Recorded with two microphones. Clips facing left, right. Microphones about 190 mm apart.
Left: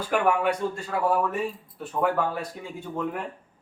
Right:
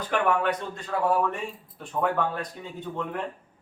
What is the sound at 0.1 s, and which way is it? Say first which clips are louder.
Speech: left 1 dB; 10° left (ahead or behind).